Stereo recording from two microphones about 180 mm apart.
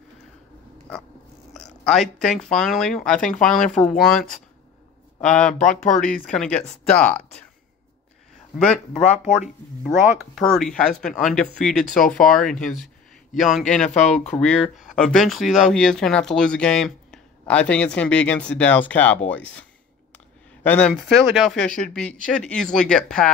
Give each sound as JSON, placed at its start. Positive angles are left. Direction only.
{"t": 1.5, "sound": "speech", "side_deg": 0}
{"t": 5.5, "sound": "speech", "side_deg": 45}
{"t": 6.2, "sound": "speech", "side_deg": 5}
{"t": 8.5, "sound": "speech", "side_deg": 5}
{"t": 13.8, "sound": "speech", "side_deg": 40}
{"t": 14.3, "sound": "speech", "side_deg": 5}
{"t": 20.6, "sound": "speech", "side_deg": 10}